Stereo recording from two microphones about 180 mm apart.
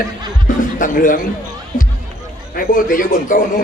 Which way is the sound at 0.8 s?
50° left (ahead or behind).